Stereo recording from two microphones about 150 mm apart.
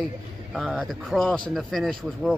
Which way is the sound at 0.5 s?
Centre (ahead or behind).